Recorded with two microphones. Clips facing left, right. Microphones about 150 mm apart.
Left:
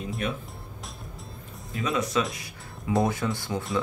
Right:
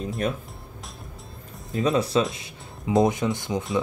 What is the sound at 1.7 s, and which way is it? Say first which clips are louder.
Speech: right 6 dB; 35° right (ahead or behind).